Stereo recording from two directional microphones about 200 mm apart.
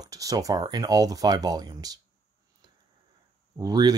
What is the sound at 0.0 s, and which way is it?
Speech, 15° right (ahead or behind).